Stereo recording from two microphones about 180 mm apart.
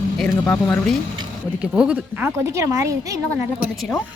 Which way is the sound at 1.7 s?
5° right (ahead or behind).